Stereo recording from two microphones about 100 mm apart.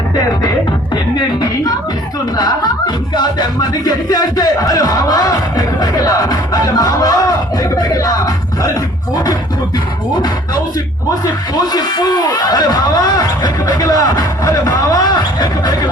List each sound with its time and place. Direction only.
2.3 s music: 45° left (ahead or behind)
11.5 s music: 40° left (ahead or behind)